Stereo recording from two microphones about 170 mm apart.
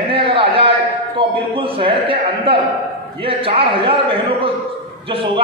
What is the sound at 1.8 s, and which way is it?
A man's voice, 30° right (ahead or behind).